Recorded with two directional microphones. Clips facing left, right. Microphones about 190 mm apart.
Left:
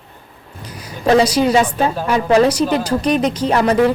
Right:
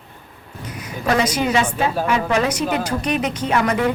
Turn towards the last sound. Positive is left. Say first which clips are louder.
# left 5 dB
turn(degrees=35)  # may be behind; listen again after turning